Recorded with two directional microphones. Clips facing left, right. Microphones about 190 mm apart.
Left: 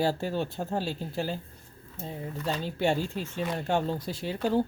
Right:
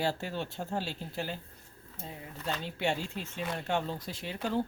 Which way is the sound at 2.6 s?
40° left (ahead or behind).